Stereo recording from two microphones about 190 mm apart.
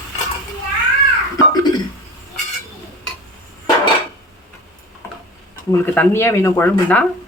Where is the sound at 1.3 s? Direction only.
20° left (ahead or behind).